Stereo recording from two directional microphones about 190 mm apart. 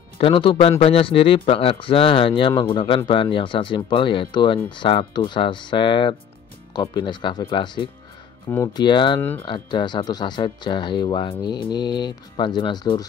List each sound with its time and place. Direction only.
0.2 s speech: 25° left (ahead or behind)